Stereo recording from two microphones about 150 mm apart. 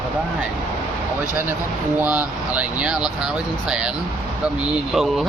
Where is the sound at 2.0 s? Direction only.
10° right (ahead or behind).